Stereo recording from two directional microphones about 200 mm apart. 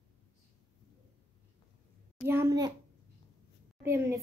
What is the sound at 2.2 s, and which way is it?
Speech, 15° right (ahead or behind).